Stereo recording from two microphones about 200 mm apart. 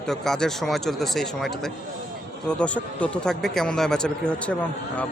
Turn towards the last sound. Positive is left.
turn(degrees=5)  # may be behind; listen again after turning